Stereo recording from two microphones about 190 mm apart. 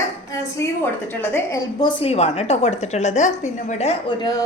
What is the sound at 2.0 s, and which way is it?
A woman's voice, 30° left (ahead or behind).